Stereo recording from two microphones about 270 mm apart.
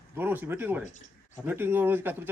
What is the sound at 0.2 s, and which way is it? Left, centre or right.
Speech, centre.